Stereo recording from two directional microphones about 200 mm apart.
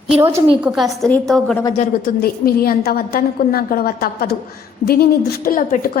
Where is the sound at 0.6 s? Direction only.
Centre (ahead or behind).